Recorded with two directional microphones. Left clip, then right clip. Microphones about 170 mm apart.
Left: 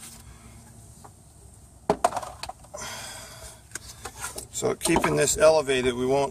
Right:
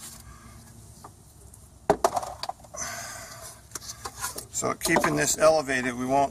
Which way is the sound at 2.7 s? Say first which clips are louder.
Right 1 dB; 55° left (ahead or behind).